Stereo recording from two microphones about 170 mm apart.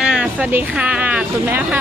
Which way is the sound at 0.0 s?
5° right (ahead or behind).